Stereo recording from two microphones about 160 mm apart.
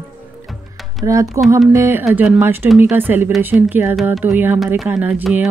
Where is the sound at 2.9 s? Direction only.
10° right (ahead or behind).